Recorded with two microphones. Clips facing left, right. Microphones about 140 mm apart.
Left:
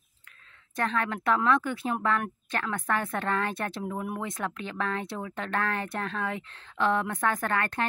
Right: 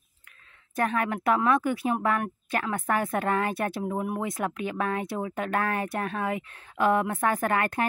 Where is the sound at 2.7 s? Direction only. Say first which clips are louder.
Right 3 dB; 20° right (ahead or behind).